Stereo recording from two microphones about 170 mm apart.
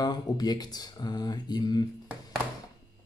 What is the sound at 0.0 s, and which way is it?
Speech, 25° left (ahead or behind).